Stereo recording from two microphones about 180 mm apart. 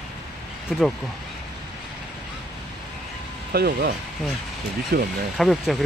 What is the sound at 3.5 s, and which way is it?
Speech, 60° right (ahead or behind).